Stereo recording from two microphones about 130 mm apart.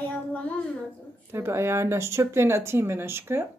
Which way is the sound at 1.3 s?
20° right (ahead or behind).